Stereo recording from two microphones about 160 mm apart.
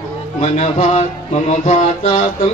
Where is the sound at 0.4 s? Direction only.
45° left (ahead or behind).